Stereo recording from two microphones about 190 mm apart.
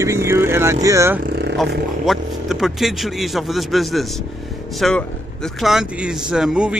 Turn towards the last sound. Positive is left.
turn(degrees=-5)  # may be behind; listen again after turning